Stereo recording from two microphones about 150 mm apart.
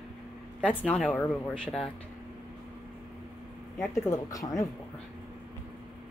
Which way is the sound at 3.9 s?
20° left (ahead or behind).